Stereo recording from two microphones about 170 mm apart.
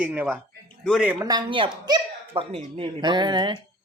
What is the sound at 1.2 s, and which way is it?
A child's voice, 25° right (ahead or behind).